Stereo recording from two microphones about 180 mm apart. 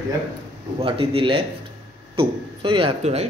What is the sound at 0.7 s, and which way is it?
A man's voice, 30° right (ahead or behind).